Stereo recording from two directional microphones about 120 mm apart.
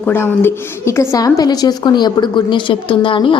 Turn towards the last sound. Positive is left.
turn(degrees=45)  # may be behind; listen again after turning